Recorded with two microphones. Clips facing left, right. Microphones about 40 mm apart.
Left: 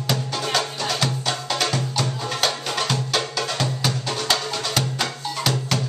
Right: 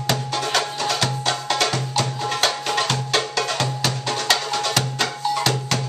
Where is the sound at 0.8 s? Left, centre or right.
Centre.